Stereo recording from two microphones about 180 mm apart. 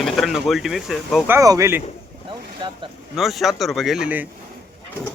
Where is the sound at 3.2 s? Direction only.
Centre (ahead or behind).